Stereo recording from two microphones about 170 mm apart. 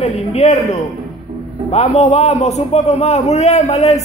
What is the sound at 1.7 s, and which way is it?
A man's voice, 40° left (ahead or behind).